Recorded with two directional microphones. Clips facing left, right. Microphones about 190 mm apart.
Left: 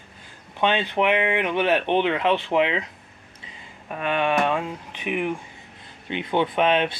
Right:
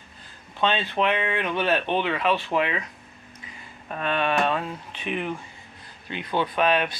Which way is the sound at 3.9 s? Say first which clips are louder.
Left 2 dB; 15° left (ahead or behind).